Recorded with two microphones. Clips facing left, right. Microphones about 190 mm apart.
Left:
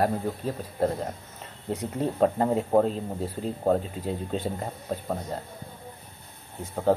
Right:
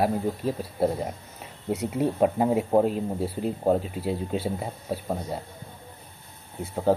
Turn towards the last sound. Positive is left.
turn(degrees=-10)  # may be behind; listen again after turning